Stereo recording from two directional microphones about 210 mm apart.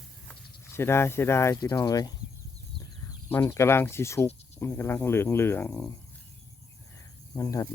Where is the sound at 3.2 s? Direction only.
10° left (ahead or behind).